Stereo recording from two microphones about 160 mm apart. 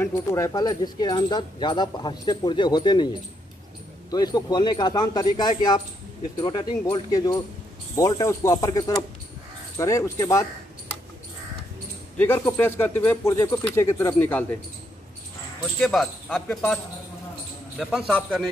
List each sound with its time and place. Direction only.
0.0 s speech: 20° left (ahead or behind)
12.2 s speech: 10° left (ahead or behind)
15.9 s speech: centre (ahead or behind)
16.4 s speech: 10° left (ahead or behind)
17.7 s speech: 5° right (ahead or behind)